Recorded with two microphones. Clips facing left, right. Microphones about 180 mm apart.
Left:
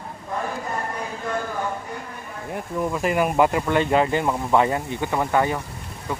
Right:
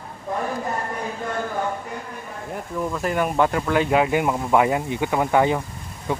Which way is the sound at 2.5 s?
10° left (ahead or behind).